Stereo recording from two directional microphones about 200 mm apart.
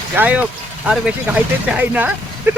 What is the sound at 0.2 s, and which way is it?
Speech, 10° right (ahead or behind).